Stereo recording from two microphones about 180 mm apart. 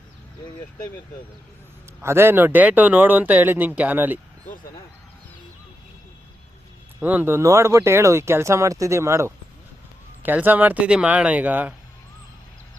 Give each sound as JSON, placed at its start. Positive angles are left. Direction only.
{"t": 2.0, "sound": "speech", "side_deg": -15}
{"t": 7.0, "sound": "speech", "side_deg": -10}